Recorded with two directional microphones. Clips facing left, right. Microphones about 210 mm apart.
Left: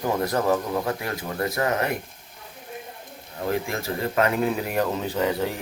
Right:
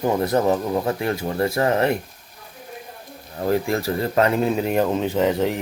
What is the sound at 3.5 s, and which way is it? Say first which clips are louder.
Speech: right 6 dB; 35° right (ahead or behind).